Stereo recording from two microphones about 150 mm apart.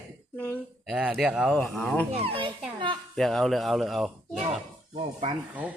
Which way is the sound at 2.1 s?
40° right (ahead or behind).